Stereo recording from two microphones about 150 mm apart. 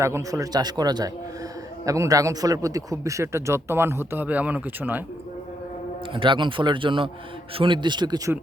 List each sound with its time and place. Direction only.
0.0 s a man's voice: 20° right (ahead or behind)
6.1 s a man's voice: 35° right (ahead or behind)